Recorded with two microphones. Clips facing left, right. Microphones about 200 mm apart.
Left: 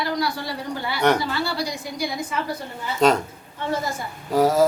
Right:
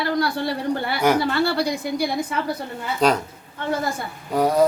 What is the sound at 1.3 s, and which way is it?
Speech, 60° right (ahead or behind).